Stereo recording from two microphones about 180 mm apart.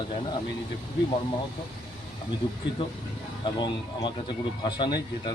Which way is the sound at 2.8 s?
25° left (ahead or behind).